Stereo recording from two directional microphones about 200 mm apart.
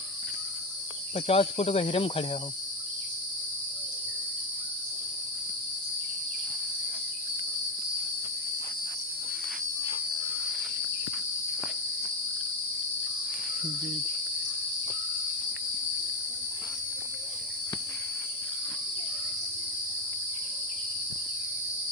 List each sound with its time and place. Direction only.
1.1 s speech: 30° left (ahead or behind)